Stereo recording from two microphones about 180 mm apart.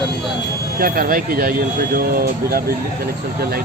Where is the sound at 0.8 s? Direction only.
55° right (ahead or behind).